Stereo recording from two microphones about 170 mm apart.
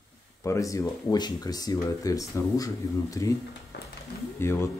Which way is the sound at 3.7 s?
80° left.